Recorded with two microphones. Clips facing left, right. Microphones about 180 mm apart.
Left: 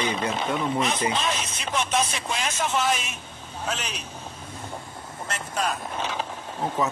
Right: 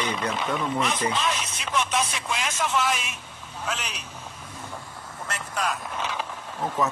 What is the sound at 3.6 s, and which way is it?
Speech, 30° left (ahead or behind).